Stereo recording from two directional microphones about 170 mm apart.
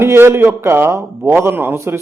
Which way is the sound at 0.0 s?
15° right (ahead or behind).